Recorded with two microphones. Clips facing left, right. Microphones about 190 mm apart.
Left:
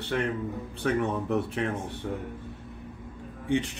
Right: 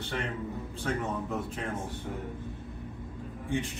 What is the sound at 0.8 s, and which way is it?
Speech, 65° left (ahead or behind).